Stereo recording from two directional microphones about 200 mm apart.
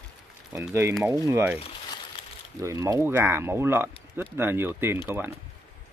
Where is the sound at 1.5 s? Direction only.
30° left (ahead or behind).